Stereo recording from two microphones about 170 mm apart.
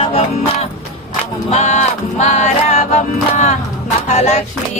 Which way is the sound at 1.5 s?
40° left (ahead or behind).